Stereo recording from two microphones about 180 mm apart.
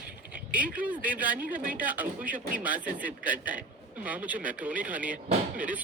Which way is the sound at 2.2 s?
50° right (ahead or behind).